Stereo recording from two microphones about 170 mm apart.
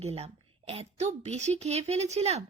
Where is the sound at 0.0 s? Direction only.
35° right (ahead or behind).